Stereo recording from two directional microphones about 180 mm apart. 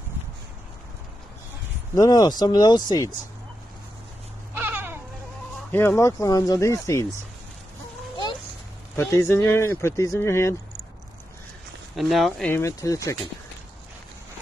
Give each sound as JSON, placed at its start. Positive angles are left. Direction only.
{"t": 2.0, "sound": "speech", "side_deg": 20}
{"t": 4.6, "sound": "a sound", "side_deg": -10}
{"t": 5.7, "sound": "speech", "side_deg": 10}
{"t": 8.9, "sound": "speech", "side_deg": 15}
{"t": 11.9, "sound": "speech", "side_deg": 0}
{"t": 12.6, "sound": "speech", "side_deg": 15}